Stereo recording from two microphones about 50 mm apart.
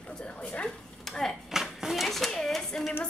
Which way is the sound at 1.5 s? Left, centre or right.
Centre.